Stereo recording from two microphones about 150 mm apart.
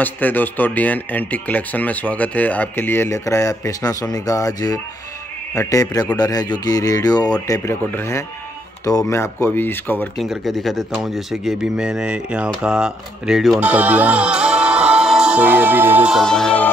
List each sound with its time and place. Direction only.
0.0 s speech: 10° left (ahead or behind)
10.1 s speech: centre (ahead or behind)
13.6 s music: 10° right (ahead or behind)
16.2 s speech: 5° left (ahead or behind)